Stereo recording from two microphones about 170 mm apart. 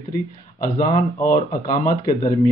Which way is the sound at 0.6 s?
55° left (ahead or behind).